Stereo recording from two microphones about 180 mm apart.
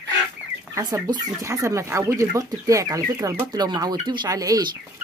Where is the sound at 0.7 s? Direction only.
20° right (ahead or behind).